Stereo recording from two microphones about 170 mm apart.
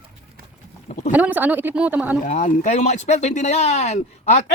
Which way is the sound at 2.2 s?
45° left (ahead or behind).